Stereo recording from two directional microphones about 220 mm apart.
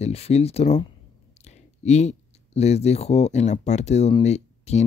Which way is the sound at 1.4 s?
30° left (ahead or behind).